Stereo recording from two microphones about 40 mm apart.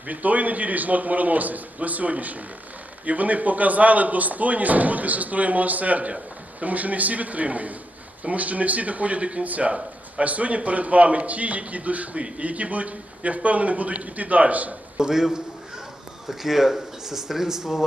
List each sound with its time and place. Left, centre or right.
0.1 s speech: right
14.9 s speech: centre